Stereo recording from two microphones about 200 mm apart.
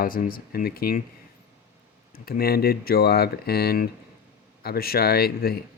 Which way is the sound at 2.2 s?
50° left (ahead or behind).